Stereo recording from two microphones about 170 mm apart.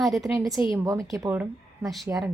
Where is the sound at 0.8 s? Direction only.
20° right (ahead or behind).